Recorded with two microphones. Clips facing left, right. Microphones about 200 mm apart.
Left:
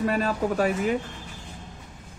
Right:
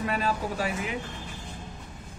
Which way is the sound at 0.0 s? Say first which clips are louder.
Left 4 dB; 45° left (ahead or behind).